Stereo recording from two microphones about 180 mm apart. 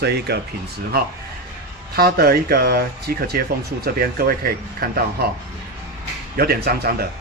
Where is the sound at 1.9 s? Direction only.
60° right (ahead or behind).